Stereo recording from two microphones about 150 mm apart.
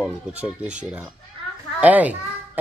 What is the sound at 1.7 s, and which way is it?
Children playing, 10° right (ahead or behind).